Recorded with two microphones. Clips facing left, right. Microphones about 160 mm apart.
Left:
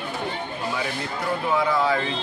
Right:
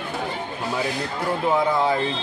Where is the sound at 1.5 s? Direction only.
25° right (ahead or behind).